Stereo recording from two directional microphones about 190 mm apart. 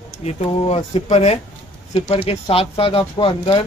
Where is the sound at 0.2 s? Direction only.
30° left (ahead or behind).